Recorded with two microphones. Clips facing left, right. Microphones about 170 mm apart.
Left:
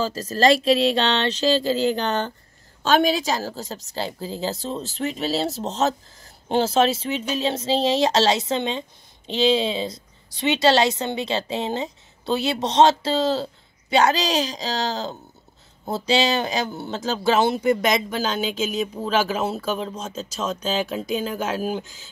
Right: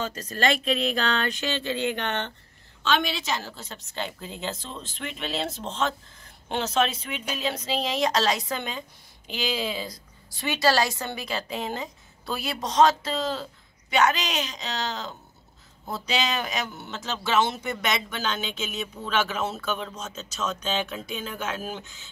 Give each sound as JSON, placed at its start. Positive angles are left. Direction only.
{"t": 0.0, "sound": "a woman's voice", "side_deg": 35}